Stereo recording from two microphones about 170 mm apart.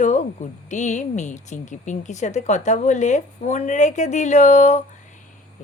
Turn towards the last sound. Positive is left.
turn(degrees=45)  # may be behind; listen again after turning